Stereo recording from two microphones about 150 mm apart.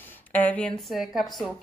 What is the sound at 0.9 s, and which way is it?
Speech, centre (ahead or behind).